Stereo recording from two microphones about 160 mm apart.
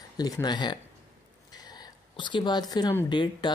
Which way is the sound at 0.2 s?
25° left (ahead or behind).